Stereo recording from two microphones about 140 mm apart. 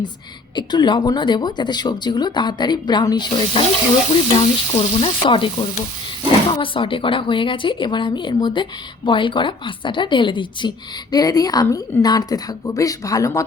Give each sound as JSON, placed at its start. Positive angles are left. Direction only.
{"t": 0.5, "sound": "speech", "side_deg": 30}
{"t": 4.1, "sound": "stir", "side_deg": 45}
{"t": 6.5, "sound": "a woman's voice", "side_deg": 35}